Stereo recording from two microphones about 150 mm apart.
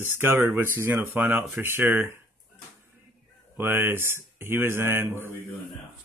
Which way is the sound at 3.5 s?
15° right (ahead or behind).